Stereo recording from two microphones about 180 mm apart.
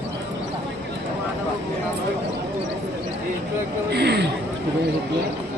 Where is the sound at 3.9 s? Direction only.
65° right (ahead or behind).